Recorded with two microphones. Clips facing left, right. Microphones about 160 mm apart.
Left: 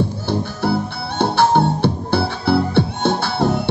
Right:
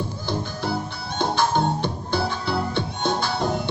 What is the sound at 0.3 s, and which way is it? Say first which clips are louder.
Music: left 5 dB; 65° left (ahead or behind).